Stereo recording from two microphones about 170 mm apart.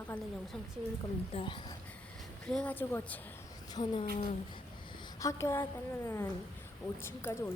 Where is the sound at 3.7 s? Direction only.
25° left (ahead or behind).